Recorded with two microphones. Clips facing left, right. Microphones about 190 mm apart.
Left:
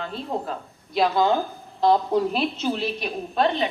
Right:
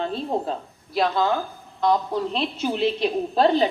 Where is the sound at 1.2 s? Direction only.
20° left (ahead or behind).